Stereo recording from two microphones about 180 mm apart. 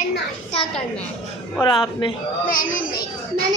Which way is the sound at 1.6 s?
25° left (ahead or behind).